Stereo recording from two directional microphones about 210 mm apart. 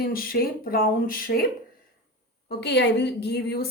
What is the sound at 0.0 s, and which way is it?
A woman's voice, 45° left (ahead or behind).